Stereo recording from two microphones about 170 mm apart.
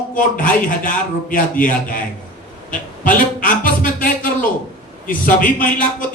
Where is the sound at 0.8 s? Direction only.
50° left (ahead or behind).